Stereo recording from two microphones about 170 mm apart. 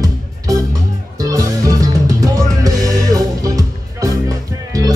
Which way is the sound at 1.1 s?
20° right (ahead or behind).